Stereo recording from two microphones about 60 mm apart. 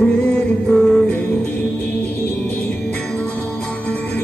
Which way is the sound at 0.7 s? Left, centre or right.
Centre.